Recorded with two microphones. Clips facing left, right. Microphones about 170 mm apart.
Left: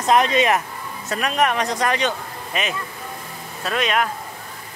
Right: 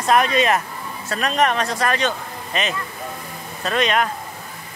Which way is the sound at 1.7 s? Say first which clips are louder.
Even; 15° left (ahead or behind).